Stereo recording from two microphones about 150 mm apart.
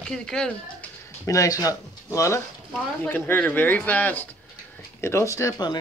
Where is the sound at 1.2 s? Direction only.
20° left (ahead or behind).